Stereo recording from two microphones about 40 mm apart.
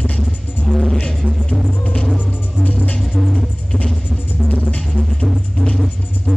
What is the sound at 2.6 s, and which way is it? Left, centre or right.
Music, left.